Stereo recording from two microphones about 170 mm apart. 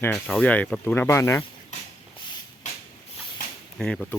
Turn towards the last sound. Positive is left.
turn(degrees=0)  # may be behind; listen again after turning